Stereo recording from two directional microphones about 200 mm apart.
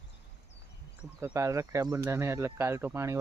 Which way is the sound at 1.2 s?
15° right (ahead or behind).